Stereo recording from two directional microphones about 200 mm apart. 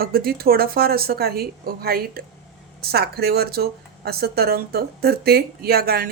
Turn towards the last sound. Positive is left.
turn(degrees=-50)  # may be behind; listen again after turning